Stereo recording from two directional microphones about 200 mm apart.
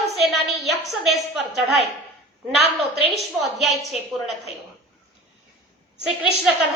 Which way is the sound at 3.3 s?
Centre (ahead or behind).